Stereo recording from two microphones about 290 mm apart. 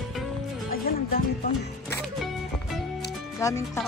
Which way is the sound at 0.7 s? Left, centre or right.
Left.